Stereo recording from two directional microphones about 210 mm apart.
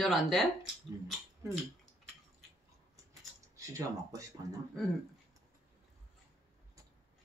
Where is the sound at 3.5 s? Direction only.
15° right (ahead or behind).